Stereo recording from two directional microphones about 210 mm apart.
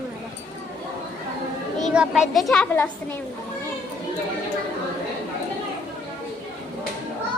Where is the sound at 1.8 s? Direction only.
Centre (ahead or behind).